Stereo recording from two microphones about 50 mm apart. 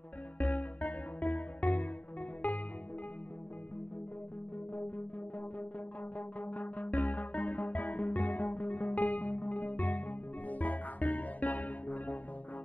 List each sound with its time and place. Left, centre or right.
0.4 s music: left
6.1 s music: left